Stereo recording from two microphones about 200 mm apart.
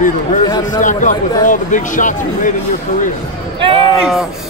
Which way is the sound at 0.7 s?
40° left (ahead or behind).